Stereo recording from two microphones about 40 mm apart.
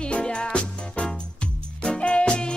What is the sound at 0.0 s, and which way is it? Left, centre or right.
Music, left.